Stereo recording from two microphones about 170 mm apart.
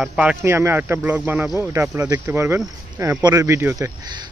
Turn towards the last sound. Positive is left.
turn(degrees=-15)  # may be behind; listen again after turning